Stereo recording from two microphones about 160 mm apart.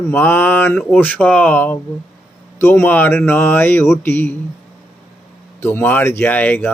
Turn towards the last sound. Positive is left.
turn(degrees=10)  # may be behind; listen again after turning